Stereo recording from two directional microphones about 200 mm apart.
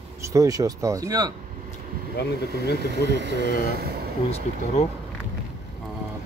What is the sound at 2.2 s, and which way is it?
Speech, 55° left (ahead or behind).